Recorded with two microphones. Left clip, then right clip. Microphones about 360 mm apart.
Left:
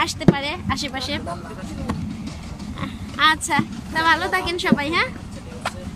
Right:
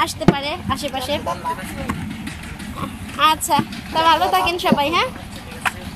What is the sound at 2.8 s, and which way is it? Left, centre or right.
Speech, centre.